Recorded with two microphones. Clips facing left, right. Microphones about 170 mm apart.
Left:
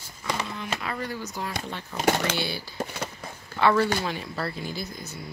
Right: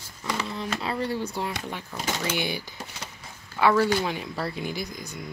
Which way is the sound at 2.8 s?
55° left (ahead or behind).